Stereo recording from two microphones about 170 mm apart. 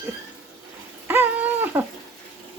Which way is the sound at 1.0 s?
10° right (ahead or behind).